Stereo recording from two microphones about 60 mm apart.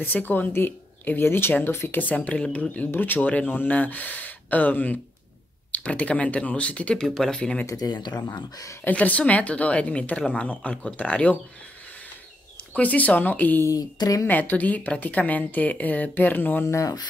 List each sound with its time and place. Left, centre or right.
0.0 s a woman's voice: left
7.2 s speech: centre
7.6 s speech: left
8.8 s a woman's voice: left
12.7 s a woman's voice: left
13.7 s speech: left
14.2 s a woman's voice: left
16.6 s speech: left